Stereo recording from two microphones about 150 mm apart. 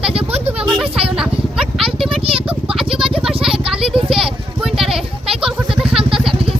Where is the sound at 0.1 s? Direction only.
40° right (ahead or behind).